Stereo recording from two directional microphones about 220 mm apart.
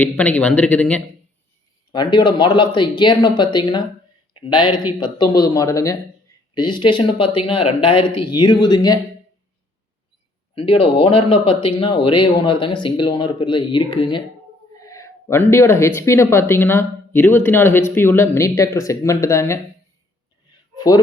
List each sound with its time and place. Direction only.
0.0 s speech: 5° left (ahead or behind)
1.9 s speech: 20° left (ahead or behind)
10.5 s speech: 25° left (ahead or behind)
20.7 s speech: 15° left (ahead or behind)